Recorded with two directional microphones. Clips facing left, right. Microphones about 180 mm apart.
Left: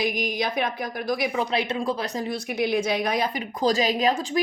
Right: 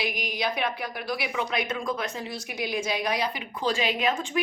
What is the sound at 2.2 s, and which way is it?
A woman's voice, 55° left (ahead or behind).